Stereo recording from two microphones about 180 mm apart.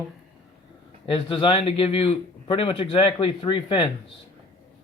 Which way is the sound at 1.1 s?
30° left (ahead or behind).